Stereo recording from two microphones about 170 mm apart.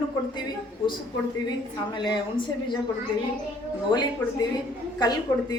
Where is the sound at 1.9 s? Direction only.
25° left (ahead or behind).